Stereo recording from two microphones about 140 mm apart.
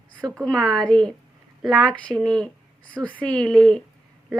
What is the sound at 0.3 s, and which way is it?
A woman's voice, 5° left (ahead or behind).